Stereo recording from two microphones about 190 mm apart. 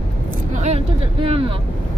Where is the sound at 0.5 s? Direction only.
35° right (ahead or behind).